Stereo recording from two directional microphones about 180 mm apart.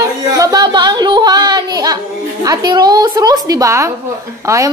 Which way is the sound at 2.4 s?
20° right (ahead or behind).